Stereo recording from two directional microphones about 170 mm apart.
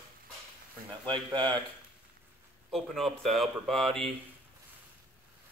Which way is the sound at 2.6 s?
Centre (ahead or behind).